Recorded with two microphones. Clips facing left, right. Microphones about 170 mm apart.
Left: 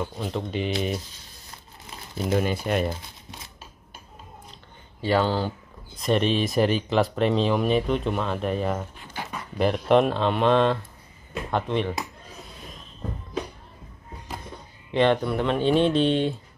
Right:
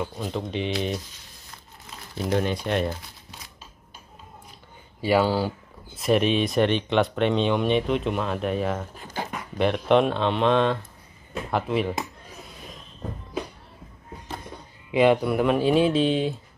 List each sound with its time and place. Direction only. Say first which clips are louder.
0.0 s speech: even; centre (ahead or behind)
2.3 s speech: even; 5° left (ahead or behind)
5.0 s speech: right 2 dB; 10° right (ahead or behind)
8.9 s dog: right 4 dB; 40° right (ahead or behind)
9.6 s speech: even; centre (ahead or behind)
14.9 s speech: right 2 dB; 10° right (ahead or behind)